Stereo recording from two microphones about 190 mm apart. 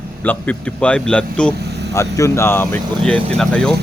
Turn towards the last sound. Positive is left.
turn(degrees=5)  # may be behind; listen again after turning